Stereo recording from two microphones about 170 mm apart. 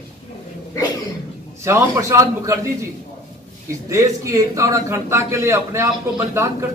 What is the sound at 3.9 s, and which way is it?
A man's voice, 20° right (ahead or behind).